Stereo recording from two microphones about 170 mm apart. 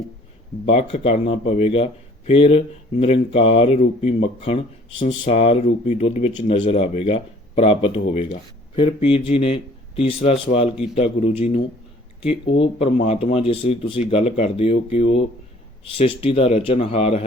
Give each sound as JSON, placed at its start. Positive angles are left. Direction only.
{"t": 0.7, "sound": "speech", "side_deg": 40}